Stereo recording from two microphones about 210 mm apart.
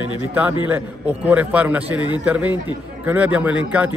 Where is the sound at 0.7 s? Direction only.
10° right (ahead or behind).